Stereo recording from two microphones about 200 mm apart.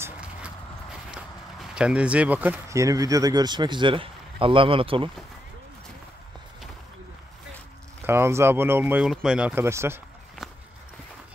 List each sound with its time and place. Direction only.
0.0 s vehicle: 5° right (ahead or behind)
1.1 s speech: 5° right (ahead or behind); by 5.1 s 25° right (ahead or behind)
8.0 s speech: 10° right (ahead or behind)